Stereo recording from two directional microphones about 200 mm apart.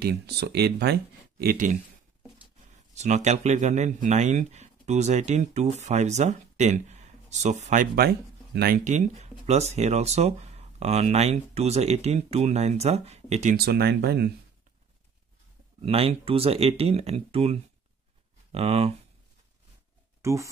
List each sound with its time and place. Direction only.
0.0 s speech: 55° right (ahead or behind)
2.9 s speech: 35° right (ahead or behind)
13.6 s speech: 50° right (ahead or behind)
15.8 s speech: 30° right (ahead or behind)
20.2 s a sound: 15° right (ahead or behind)